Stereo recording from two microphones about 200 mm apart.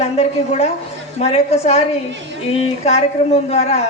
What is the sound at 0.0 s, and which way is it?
A woman's voice, 30° left (ahead or behind).